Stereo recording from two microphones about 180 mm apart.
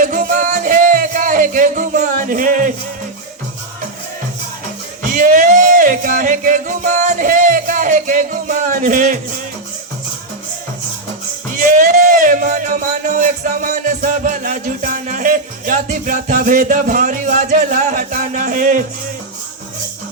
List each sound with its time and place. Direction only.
0.0 s music: 50° right (ahead or behind)
5.0 s music: 45° right (ahead or behind)
11.5 s speech: 50° right (ahead or behind)